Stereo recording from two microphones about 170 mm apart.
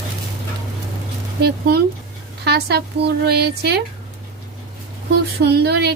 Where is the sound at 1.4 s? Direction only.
70° right (ahead or behind).